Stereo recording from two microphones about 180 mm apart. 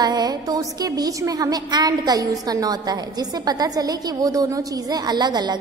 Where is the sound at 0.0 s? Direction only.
20° right (ahead or behind).